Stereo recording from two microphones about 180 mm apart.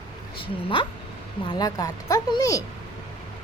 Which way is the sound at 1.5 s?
20° left (ahead or behind).